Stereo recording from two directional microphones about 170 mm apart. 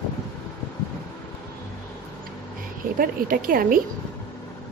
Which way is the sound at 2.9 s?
55° right (ahead or behind).